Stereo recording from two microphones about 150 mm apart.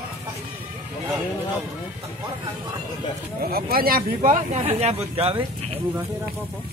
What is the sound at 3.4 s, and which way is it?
Speech, 90° right.